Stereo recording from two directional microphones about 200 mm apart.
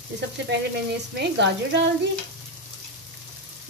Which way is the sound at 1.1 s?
60° right (ahead or behind).